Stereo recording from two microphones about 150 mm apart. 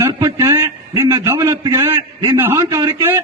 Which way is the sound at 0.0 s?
25° right (ahead or behind).